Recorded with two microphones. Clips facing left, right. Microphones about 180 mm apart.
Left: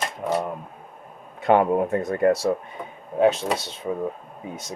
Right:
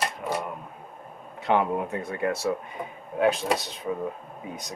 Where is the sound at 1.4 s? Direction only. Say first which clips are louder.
Left 6 dB; 50° left (ahead or behind).